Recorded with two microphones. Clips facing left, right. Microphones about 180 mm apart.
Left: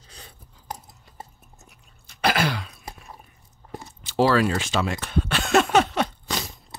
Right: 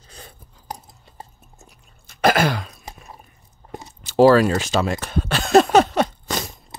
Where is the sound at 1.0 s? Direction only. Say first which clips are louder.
Even; 25° right (ahead or behind).